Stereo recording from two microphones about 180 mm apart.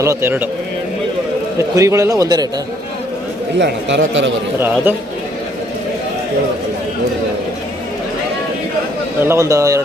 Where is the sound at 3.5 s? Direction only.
80° right.